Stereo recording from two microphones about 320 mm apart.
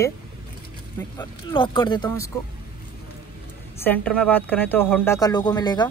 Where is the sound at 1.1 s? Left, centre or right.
Centre.